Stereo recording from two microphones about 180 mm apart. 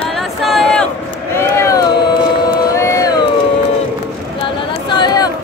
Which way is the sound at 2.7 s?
15° left (ahead or behind).